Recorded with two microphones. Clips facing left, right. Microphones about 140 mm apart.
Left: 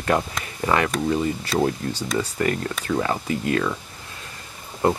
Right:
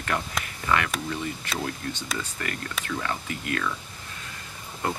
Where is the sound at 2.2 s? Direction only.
35° left (ahead or behind).